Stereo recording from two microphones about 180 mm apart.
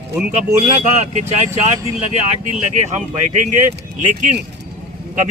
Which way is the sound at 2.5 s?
45° right (ahead or behind).